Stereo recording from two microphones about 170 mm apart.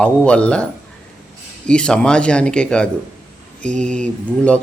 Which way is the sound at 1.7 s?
5° left (ahead or behind).